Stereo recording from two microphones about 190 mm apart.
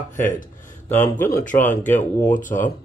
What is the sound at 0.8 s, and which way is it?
Speech, 10° left (ahead or behind).